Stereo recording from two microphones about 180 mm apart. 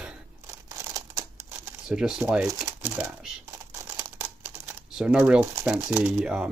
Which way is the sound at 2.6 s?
10° right (ahead or behind).